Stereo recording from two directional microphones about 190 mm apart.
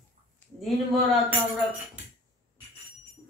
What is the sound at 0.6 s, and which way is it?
Speech, centre (ahead or behind).